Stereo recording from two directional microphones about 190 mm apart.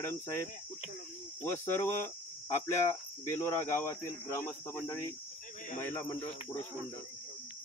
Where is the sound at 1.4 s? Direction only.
10° left (ahead or behind).